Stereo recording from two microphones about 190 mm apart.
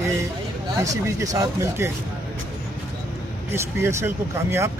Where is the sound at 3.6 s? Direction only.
15° right (ahead or behind).